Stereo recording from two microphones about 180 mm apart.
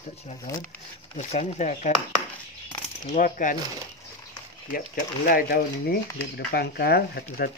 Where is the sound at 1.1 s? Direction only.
40° left (ahead or behind).